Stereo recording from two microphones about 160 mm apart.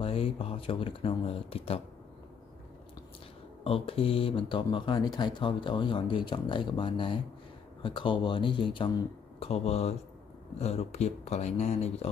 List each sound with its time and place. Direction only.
0.0 s speech: 35° left (ahead or behind)
3.6 s speech: 35° left (ahead or behind)
9.5 s speech: 40° left (ahead or behind)